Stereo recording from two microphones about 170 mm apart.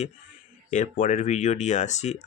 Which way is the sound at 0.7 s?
45° left (ahead or behind).